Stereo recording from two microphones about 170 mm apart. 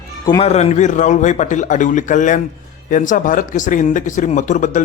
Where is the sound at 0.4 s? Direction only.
40° left (ahead or behind).